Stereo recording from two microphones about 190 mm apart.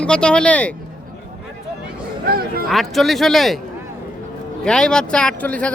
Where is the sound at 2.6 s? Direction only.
Centre (ahead or behind).